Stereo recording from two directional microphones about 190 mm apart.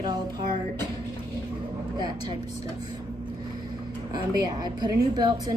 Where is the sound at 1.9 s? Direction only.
20° right (ahead or behind).